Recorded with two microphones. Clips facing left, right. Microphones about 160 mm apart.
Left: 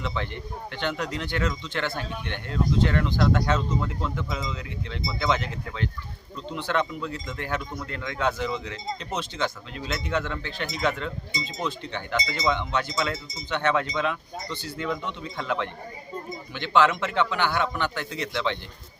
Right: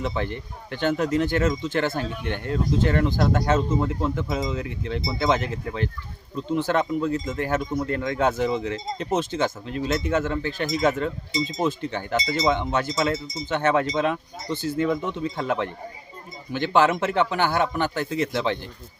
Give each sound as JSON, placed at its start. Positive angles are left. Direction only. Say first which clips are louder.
{"t": 0.0, "sound": "speech", "louder": "right 4 dB", "side_deg": -40}
{"t": 4.0, "sound": "speech", "louder": "right 5 dB", "side_deg": -45}